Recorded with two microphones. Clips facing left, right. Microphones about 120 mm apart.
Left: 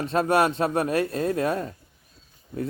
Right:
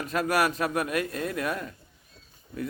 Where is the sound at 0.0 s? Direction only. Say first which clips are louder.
Left 4 dB; 30° left (ahead or behind).